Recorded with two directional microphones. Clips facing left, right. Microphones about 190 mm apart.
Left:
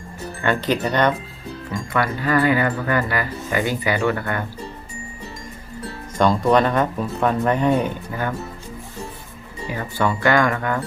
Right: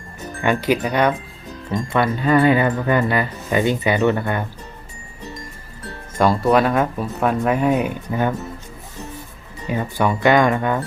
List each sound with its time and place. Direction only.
0.4 s speech: 10° right (ahead or behind)
1.7 s speech: 25° right (ahead or behind)
6.1 s speech: 5° right (ahead or behind)
9.6 s speech: 20° right (ahead or behind)